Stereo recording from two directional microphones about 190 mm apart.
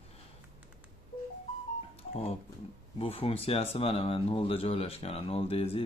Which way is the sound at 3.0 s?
30° left (ahead or behind).